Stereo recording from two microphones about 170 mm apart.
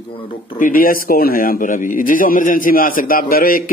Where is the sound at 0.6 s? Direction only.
55° left (ahead or behind).